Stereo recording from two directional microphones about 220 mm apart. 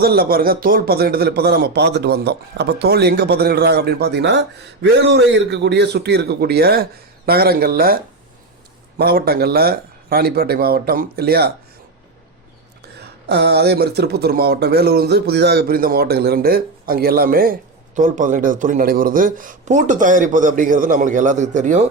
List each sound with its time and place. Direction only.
0.0 s speech: 45° right (ahead or behind)
9.0 s speech: 45° right (ahead or behind)
12.8 s speech: 50° right (ahead or behind); by 21.8 s 35° right (ahead or behind)